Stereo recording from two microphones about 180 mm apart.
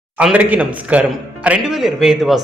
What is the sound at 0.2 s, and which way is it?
A man's voice, 5° right (ahead or behind).